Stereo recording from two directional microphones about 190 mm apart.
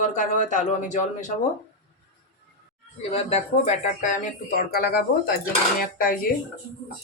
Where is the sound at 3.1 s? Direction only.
35° left (ahead or behind).